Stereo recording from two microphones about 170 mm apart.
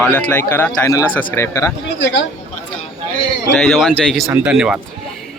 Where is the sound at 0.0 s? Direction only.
10° left (ahead or behind).